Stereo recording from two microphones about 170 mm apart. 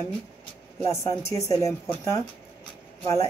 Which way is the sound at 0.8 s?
20° left (ahead or behind).